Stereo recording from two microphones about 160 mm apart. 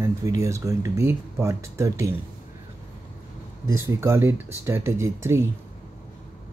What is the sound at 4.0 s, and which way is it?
Speech, 15° right (ahead or behind).